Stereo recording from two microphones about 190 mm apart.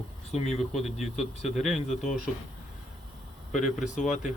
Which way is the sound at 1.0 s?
35° left (ahead or behind).